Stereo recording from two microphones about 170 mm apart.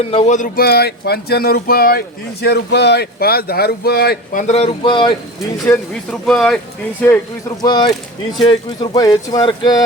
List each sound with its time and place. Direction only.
0.1 s speech: 40° left (ahead or behind)
6.1 s speech: 5° left (ahead or behind)
7.6 s speech: 25° left (ahead or behind)